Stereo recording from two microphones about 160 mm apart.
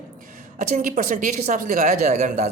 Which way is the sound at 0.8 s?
55° right (ahead or behind).